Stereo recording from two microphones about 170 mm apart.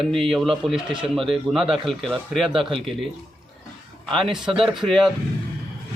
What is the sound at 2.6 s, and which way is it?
Speech, 30° right (ahead or behind).